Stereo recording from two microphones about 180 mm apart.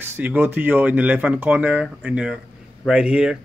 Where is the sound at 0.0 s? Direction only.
10° right (ahead or behind).